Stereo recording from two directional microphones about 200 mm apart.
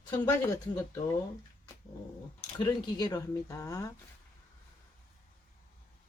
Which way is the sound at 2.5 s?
20° left (ahead or behind).